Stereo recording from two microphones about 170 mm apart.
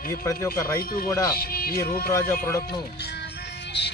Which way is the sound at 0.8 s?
60° left (ahead or behind).